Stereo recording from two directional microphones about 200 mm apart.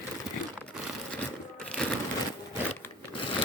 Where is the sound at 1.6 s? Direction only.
5° left (ahead or behind).